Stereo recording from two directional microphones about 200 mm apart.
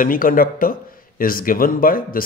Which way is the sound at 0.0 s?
45° left (ahead or behind).